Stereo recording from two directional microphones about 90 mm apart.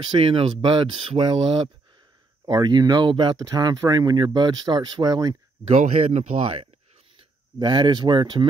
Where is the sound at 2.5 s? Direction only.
50° right (ahead or behind).